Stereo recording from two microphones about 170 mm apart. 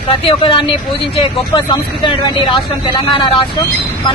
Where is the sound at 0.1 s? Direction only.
30° left (ahead or behind).